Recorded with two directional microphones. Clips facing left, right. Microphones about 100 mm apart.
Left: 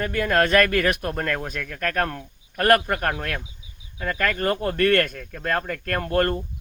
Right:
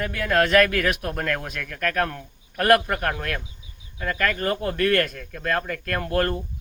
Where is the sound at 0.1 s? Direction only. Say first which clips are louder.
Even; centre (ahead or behind).